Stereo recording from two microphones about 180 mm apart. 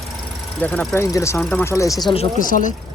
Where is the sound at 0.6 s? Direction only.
10° left (ahead or behind).